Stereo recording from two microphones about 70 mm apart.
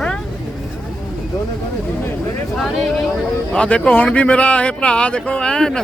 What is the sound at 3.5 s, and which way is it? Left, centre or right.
Speech, centre.